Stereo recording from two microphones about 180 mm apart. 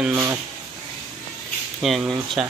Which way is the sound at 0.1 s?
20° right (ahead or behind).